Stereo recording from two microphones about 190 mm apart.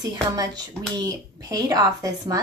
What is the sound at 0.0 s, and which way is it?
Speech, 20° right (ahead or behind).